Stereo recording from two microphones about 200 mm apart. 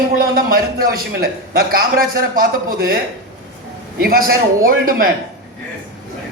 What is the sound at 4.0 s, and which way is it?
Speech, 50° right (ahead or behind).